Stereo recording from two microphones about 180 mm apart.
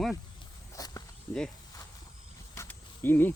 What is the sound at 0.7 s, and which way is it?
Walk, 20° left (ahead or behind).